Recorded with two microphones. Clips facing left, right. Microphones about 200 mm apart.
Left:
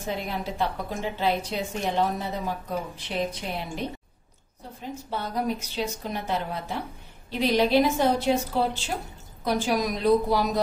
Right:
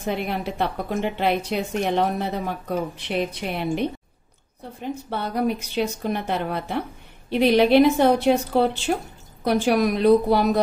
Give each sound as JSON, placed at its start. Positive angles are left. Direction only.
{"t": 0.1, "sound": "a woman's voice", "side_deg": -65}
{"t": 5.1, "sound": "a woman's voice", "side_deg": -60}